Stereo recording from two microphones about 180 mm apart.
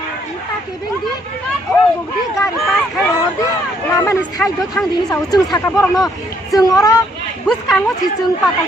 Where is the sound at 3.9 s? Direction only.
15° left (ahead or behind).